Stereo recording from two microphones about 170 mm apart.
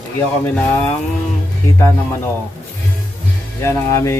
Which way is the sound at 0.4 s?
5° left (ahead or behind).